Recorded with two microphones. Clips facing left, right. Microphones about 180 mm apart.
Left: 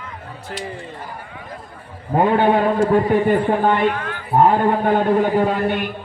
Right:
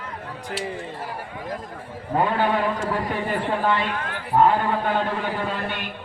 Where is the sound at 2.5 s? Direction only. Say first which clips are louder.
Left 8 dB; 45° left (ahead or behind).